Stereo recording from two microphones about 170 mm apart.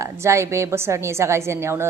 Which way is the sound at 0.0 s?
15° right (ahead or behind).